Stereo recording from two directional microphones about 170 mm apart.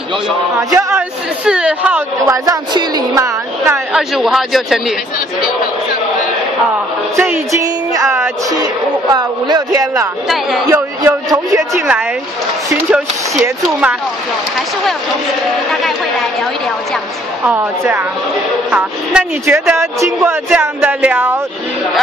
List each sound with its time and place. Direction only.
0.6 s speech: 15° right (ahead or behind)
3.9 s speech: centre (ahead or behind)
7.2 s music: 15° right (ahead or behind)
10.2 s speech: centre (ahead or behind)
10.7 s speech: 15° right (ahead or behind)
15.7 s speech: centre (ahead or behind)
17.6 s speech: 15° right (ahead or behind)